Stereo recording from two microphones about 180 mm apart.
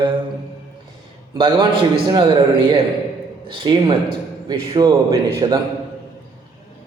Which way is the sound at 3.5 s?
30° right (ahead or behind).